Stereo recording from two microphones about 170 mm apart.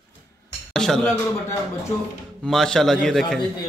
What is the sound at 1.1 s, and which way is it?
Speech, 15° left (ahead or behind).